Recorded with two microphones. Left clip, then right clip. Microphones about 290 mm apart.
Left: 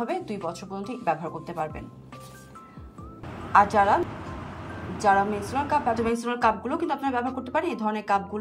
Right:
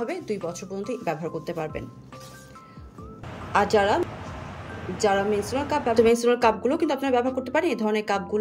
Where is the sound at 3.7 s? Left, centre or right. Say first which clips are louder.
Even; centre.